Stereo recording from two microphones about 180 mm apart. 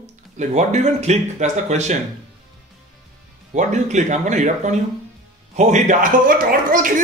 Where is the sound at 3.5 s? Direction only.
40° right (ahead or behind).